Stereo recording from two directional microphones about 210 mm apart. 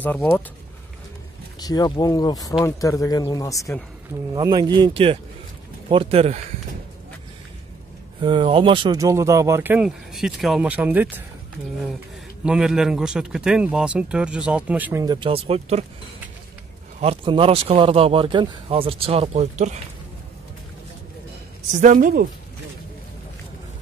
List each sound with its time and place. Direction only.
0.0 s speech: 10° left (ahead or behind)
1.6 s speech: 20° left (ahead or behind)
4.3 s speech: 20° right (ahead or behind)
8.2 s speech: 25° right (ahead or behind)
12.4 s speech: 5° right (ahead or behind); by 15.8 s 30° right (ahead or behind)
17.0 s speech: 25° right (ahead or behind)
21.7 s a woman's voice: 40° right (ahead or behind)